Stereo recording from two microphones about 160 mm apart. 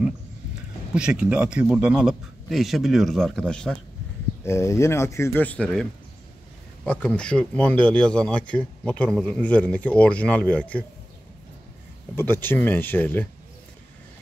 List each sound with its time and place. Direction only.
0.9 s speech: 5° right (ahead or behind)
4.5 s speech: 20° left (ahead or behind)
12.2 s speech: 15° left (ahead or behind)